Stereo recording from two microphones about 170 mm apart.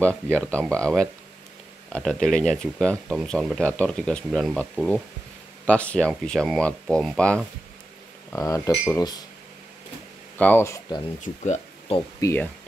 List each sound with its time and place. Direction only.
0.4 s speech: 5° left (ahead or behind)
8.3 s speech: 20° left (ahead or behind)
10.3 s speech: 10° left (ahead or behind)
11.1 s speech: 45° left (ahead or behind)
12.2 s speech: 15° left (ahead or behind)